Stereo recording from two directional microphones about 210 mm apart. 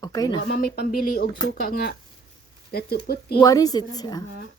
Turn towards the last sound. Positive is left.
turn(degrees=20)  # may be behind; listen again after turning